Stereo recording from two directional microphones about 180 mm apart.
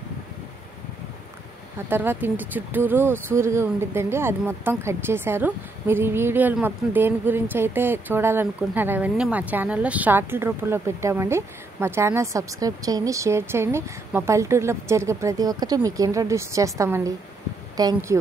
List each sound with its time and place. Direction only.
1.9 s speech: 10° right (ahead or behind)